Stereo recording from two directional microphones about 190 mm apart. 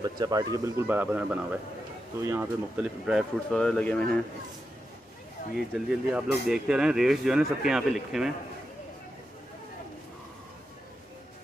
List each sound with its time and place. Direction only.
0.0 s speech: 20° right (ahead or behind)
2.8 s speech: 5° right (ahead or behind)
5.6 s speech: 5° right (ahead or behind)